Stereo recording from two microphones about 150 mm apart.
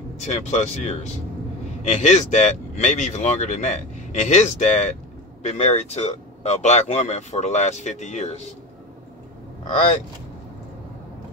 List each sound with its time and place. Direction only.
0.2 s speech: 50° left (ahead or behind)